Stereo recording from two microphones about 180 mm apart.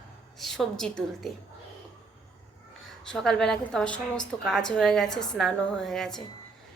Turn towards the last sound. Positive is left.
turn(degrees=0)  # may be behind; listen again after turning